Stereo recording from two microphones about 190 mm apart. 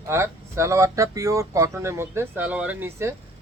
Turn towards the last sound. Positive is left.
turn(degrees=-10)  # may be behind; listen again after turning